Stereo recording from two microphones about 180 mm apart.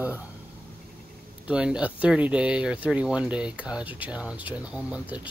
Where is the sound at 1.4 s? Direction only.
5° right (ahead or behind).